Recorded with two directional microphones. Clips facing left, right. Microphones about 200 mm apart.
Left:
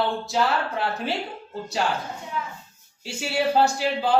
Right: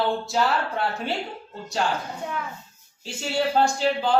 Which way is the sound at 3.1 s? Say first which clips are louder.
Left 1 dB; 10° left (ahead or behind).